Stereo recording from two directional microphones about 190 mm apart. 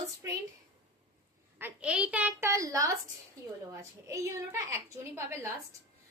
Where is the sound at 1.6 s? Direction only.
5° right (ahead or behind).